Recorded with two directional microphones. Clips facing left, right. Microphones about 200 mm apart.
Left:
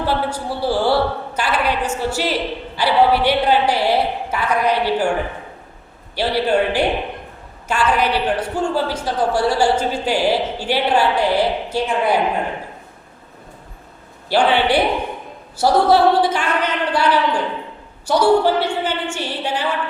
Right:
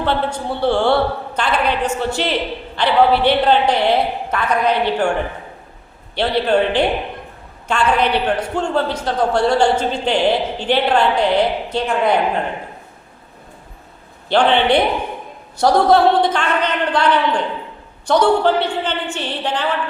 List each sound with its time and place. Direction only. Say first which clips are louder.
0.0 s a woman's voice: right 1 dB; 10° left (ahead or behind)
6.1 s a woman's voice: right 1 dB; 10° left (ahead or behind)
14.3 s a woman's voice: right 2 dB; 10° left (ahead or behind)